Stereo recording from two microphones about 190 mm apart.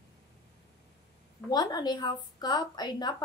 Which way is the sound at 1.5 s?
20° left (ahead or behind).